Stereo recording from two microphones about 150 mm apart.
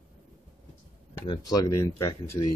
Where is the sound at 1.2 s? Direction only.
30° left (ahead or behind).